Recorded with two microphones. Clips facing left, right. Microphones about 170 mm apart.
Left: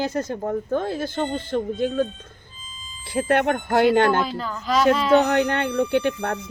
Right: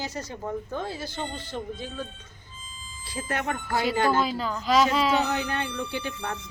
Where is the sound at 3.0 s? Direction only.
65° left (ahead or behind).